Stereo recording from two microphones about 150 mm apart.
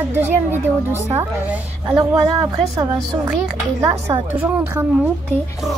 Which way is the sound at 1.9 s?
40° right (ahead or behind).